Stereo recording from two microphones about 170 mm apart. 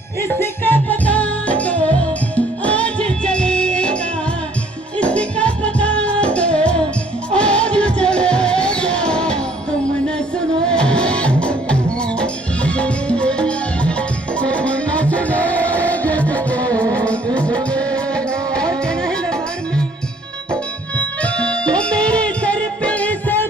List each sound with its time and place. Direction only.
0.4 s music: 10° left (ahead or behind)
10.7 s music: 5° left (ahead or behind)
21.2 s music: 5° left (ahead or behind)